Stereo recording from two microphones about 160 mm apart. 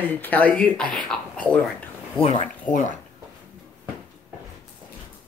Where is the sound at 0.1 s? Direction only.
10° left (ahead or behind).